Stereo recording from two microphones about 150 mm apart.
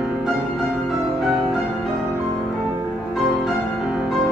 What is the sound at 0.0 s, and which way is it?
Music, 5° right (ahead or behind).